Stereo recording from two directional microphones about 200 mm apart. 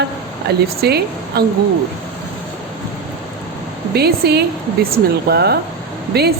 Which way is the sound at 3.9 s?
55° right (ahead or behind).